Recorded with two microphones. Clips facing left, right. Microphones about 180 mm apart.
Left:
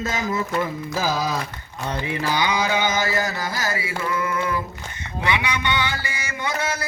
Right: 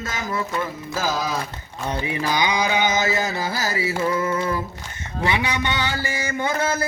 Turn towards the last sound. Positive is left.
turn(degrees=-50)  # may be behind; listen again after turning